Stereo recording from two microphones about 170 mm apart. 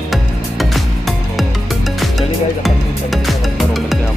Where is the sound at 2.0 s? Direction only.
Centre (ahead or behind).